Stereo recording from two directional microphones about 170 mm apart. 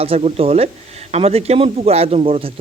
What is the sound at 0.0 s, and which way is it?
Speech, 35° right (ahead or behind).